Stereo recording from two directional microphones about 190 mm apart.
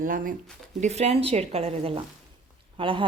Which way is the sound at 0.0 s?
45° right (ahead or behind).